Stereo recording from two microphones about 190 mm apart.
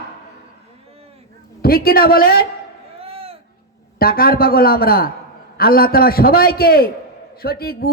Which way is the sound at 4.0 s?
50° left (ahead or behind).